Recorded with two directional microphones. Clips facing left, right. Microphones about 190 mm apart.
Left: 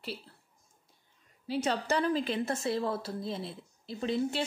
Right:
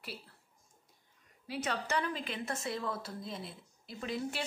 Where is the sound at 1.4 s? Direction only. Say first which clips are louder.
Left 6 dB; 30° left (ahead or behind).